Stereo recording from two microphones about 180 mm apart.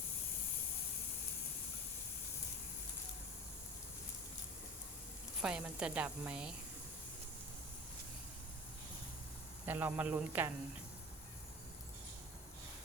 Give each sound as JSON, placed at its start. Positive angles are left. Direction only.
{"t": 5.4, "sound": "a woman's voice", "side_deg": -5}
{"t": 9.6, "sound": "speech", "side_deg": -10}